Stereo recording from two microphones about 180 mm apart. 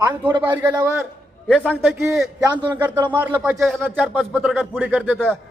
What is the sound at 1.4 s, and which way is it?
A man's voice, centre (ahead or behind).